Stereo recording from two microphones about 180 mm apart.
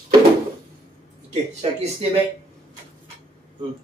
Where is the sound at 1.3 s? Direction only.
35° right (ahead or behind).